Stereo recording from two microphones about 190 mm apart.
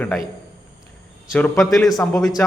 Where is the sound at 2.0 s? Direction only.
15° left (ahead or behind).